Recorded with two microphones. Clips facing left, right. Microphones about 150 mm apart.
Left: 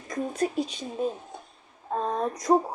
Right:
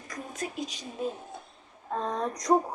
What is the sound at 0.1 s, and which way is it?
Speech, 30° left (ahead or behind).